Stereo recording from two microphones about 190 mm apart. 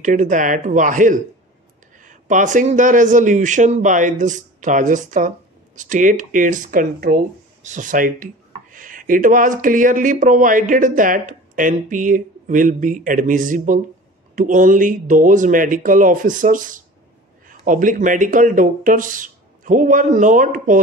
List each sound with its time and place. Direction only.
0.0 s a man's voice: 40° right (ahead or behind)